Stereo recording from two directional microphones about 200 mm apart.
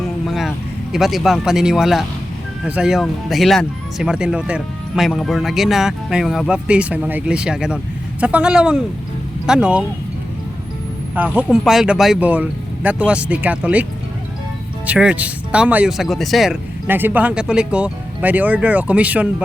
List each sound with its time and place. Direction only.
0.3 s music: centre (ahead or behind)
0.9 s speech: centre (ahead or behind)
11.1 s speech: 5° right (ahead or behind)
14.8 s speech: 5° right (ahead or behind)